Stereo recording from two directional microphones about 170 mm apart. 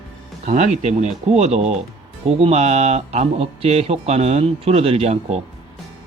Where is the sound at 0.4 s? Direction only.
40° right (ahead or behind).